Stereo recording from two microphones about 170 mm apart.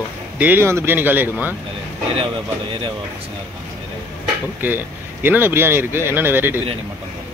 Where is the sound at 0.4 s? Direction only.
15° right (ahead or behind).